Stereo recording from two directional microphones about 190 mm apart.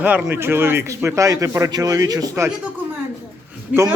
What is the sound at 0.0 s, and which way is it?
A man's voice, 10° right (ahead or behind).